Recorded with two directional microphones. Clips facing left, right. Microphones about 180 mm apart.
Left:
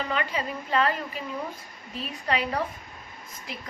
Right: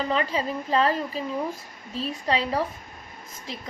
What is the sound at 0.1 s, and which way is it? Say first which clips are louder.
A woman's voice: right 4 dB; 35° right (ahead or behind).